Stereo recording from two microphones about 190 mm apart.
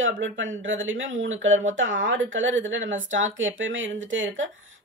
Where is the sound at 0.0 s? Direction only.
85° right.